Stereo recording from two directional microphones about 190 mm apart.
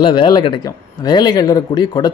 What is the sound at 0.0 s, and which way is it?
Speech, 25° left (ahead or behind).